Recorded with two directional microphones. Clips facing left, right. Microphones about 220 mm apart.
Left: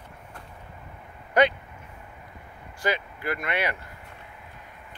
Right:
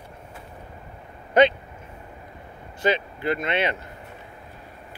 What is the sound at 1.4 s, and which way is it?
Vehicle, 20° right (ahead or behind).